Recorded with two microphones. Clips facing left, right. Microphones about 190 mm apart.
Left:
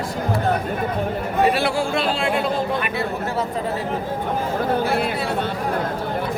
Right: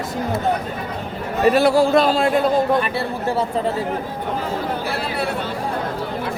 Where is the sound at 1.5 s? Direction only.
40° right (ahead or behind).